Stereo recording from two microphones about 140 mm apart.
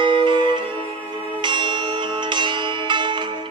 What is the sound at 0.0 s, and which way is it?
Music, 35° right (ahead or behind).